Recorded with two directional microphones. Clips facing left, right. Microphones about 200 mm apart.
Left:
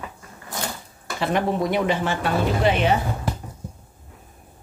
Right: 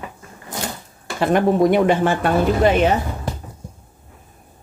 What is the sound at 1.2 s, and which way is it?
Speech, 50° right (ahead or behind).